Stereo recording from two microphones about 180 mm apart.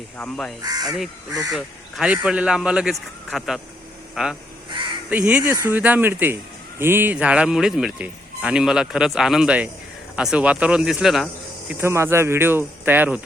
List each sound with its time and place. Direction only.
0.2 s speech: 5° left (ahead or behind)
0.6 s speech: 20° right (ahead or behind)
0.9 s speech: centre (ahead or behind)
11.7 s speech: 15° right (ahead or behind)